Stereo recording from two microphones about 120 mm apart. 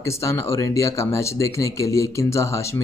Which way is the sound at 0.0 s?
25° left (ahead or behind).